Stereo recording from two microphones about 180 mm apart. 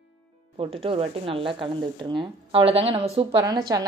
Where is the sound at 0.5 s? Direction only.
30° right (ahead or behind).